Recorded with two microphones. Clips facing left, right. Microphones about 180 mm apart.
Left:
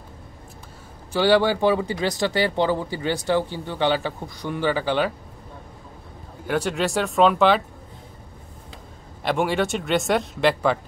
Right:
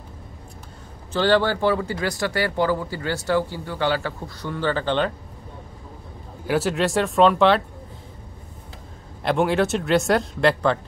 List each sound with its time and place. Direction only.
1.1 s speech: 10° left (ahead or behind)
6.4 s speech: 5° right (ahead or behind)
9.2 s speech: centre (ahead or behind)